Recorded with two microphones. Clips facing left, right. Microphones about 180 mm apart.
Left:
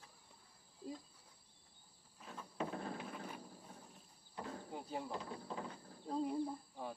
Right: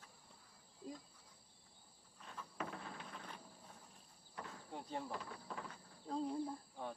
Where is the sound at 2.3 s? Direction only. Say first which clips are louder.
Left 4 dB; 30° left (ahead or behind).